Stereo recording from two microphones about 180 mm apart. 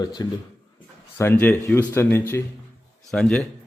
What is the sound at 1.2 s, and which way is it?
Speech, 10° left (ahead or behind).